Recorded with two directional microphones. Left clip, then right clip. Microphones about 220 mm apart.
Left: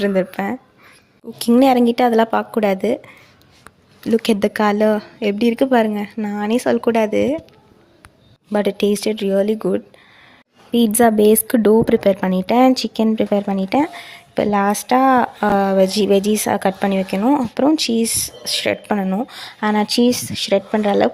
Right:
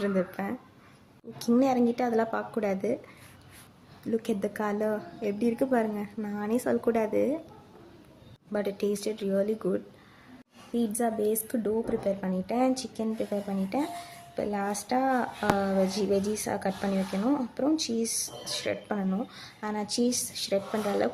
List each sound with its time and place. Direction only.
0.0 s a woman's voice: 25° left (ahead or behind)
4.0 s a woman's voice: 35° left (ahead or behind)
8.5 s a woman's voice: 30° left (ahead or behind)
10.8 s speech: 40° left (ahead or behind)